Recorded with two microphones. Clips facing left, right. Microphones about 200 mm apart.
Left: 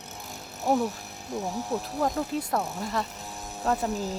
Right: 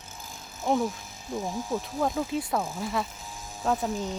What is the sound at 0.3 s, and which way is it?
Speech, 65° left (ahead or behind).